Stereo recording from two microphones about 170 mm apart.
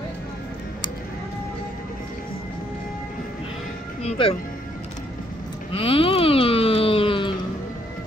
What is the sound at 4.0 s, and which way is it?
Music, 35° left (ahead or behind).